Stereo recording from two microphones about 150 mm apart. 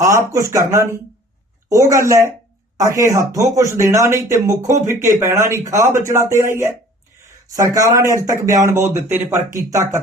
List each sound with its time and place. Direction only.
0.3 s speech: 20° right (ahead or behind)